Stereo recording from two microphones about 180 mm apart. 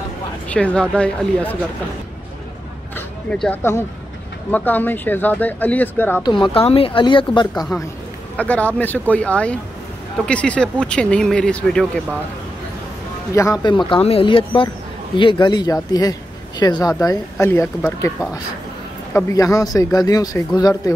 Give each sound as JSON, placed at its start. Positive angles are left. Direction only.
{"t": 0.5, "sound": "speech", "side_deg": 5}
{"t": 3.3, "sound": "speech", "side_deg": 5}
{"t": 6.2, "sound": "speech", "side_deg": 25}
{"t": 8.4, "sound": "speech", "side_deg": 10}
{"t": 13.3, "sound": "speech", "side_deg": 20}
{"t": 19.1, "sound": "speech", "side_deg": 15}